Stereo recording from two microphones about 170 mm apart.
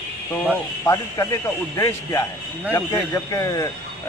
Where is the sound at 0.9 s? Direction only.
20° left (ahead or behind).